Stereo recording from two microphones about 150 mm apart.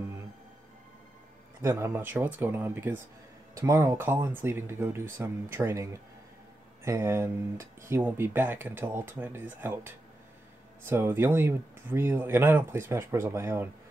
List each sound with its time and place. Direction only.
1.6 s speech: 20° right (ahead or behind)